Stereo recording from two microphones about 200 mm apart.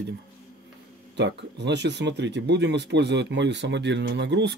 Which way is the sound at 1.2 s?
60° right (ahead or behind).